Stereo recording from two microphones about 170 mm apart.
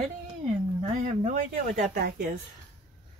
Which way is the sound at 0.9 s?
45° right (ahead or behind).